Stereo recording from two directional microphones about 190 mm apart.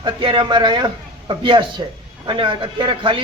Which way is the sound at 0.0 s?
25° right (ahead or behind).